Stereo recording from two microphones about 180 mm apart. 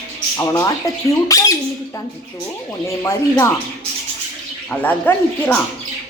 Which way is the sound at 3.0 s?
15° left (ahead or behind).